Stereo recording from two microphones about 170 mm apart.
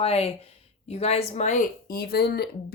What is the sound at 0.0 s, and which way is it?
Speech, 35° left (ahead or behind).